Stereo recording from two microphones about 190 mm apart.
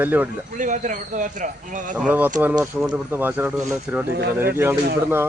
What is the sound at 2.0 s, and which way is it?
Speech, 10° right (ahead or behind).